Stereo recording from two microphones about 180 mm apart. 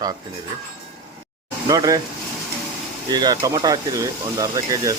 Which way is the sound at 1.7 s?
20° right (ahead or behind).